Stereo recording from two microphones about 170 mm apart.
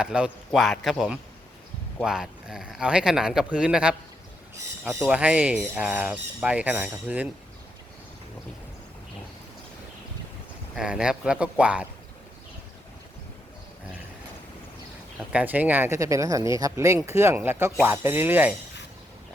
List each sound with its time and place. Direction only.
0.0 s speech: 5° right (ahead or behind)
5.0 s speech: 5° right (ahead or behind)
10.8 s speech: 5° right (ahead or behind)
15.3 s speech: 10° right (ahead or behind)